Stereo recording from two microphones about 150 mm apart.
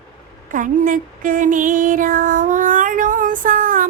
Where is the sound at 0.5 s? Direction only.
60° right (ahead or behind).